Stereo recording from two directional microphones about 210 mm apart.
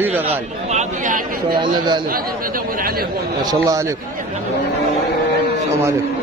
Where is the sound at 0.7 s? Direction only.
35° right (ahead or behind).